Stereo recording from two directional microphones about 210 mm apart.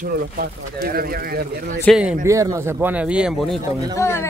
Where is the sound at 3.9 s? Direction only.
10° left (ahead or behind).